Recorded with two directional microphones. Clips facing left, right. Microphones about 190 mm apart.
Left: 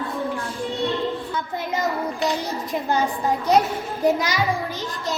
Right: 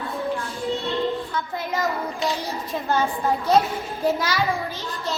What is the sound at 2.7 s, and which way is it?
A woman's voice, 15° left (ahead or behind).